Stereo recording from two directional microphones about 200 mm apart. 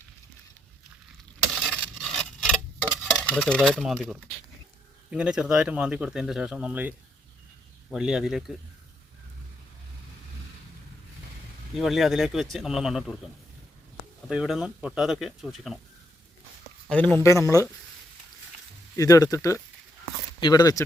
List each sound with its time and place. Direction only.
1.8 s a sound: centre (ahead or behind)
5.1 s speech: 5° right (ahead or behind)
11.8 s speech: centre (ahead or behind)
14.3 s speech: 5° right (ahead or behind)
16.9 s speech: 5° left (ahead or behind)
18.9 s speech: 15° left (ahead or behind)